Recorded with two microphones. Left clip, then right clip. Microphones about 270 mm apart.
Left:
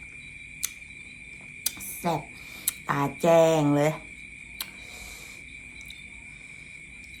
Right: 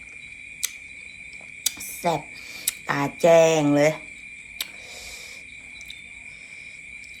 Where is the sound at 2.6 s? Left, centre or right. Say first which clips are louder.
Right 2 dB; centre.